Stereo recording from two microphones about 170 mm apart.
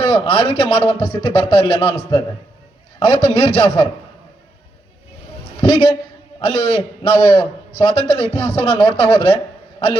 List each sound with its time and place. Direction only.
0.0 s a man's voice: 35° left (ahead or behind)
5.5 s a man's voice: 35° left (ahead or behind)